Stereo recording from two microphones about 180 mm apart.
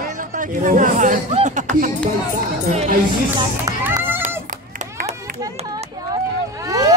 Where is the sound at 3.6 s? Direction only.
15° right (ahead or behind).